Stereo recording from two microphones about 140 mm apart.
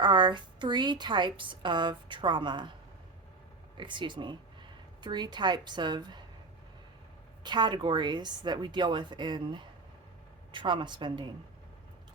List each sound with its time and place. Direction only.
0.0 s a woman's voice: 35° right (ahead or behind)
3.8 s a woman's voice: 35° right (ahead or behind)
7.4 s a woman's voice: 30° right (ahead or behind)